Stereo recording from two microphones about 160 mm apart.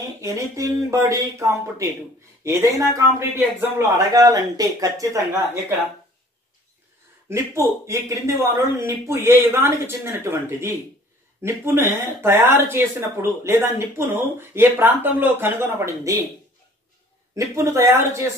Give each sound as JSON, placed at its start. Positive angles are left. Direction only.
{"t": 0.2, "sound": "a man's voice", "side_deg": -20}
{"t": 7.2, "sound": "speech", "side_deg": -15}
{"t": 17.4, "sound": "speech", "side_deg": -20}